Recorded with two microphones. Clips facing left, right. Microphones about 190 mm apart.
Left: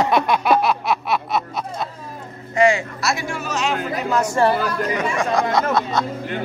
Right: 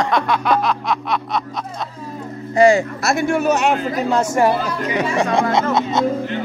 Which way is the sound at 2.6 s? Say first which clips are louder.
Right 4 dB; 40° right (ahead or behind).